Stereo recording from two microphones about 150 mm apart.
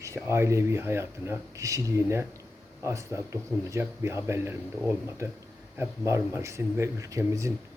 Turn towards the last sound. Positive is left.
turn(degrees=-20)  # may be behind; listen again after turning